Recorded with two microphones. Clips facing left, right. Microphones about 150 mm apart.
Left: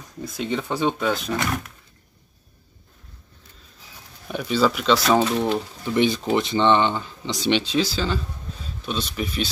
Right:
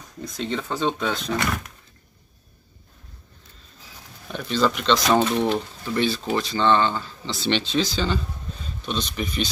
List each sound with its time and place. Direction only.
0.2 s speech: 10° left (ahead or behind)
4.3 s speech: 10° left (ahead or behind)
5.9 s speech: 15° left (ahead or behind)